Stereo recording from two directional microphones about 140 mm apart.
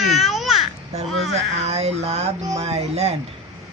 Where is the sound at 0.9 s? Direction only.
50° right (ahead or behind).